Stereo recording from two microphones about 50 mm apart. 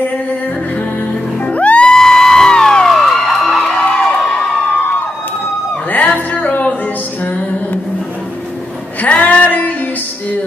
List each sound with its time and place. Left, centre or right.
1.4 s music: left
1.9 s music: centre
2.9 s music: centre
4.1 s crowd: centre
5.9 s music: left
9.0 s music: left